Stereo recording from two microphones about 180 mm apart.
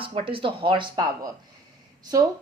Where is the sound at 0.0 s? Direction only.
30° right (ahead or behind).